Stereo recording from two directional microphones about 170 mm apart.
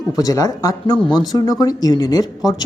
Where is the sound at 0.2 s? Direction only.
20° left (ahead or behind).